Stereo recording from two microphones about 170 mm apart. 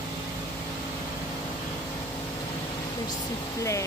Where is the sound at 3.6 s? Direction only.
20° left (ahead or behind).